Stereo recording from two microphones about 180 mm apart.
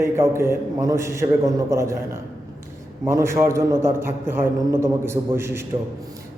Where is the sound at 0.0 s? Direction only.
15° right (ahead or behind).